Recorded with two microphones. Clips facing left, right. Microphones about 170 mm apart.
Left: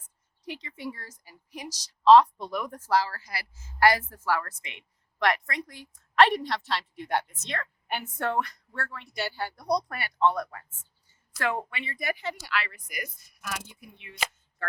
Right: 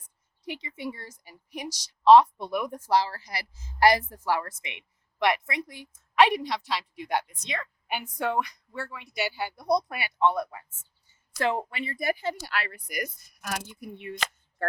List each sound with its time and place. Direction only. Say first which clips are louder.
0.0 s speech: right 2 dB; 10° right (ahead or behind)
6.2 s a woman's voice: even; centre (ahead or behind)
8.7 s a woman's voice: right 1 dB; 10° right (ahead or behind)
11.3 s speech: right 3 dB; 25° right (ahead or behind)
11.7 s speech: right 4 dB; 40° right (ahead or behind)